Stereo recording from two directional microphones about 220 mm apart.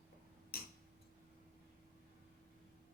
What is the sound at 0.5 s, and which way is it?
Tick-tock, 40° left (ahead or behind).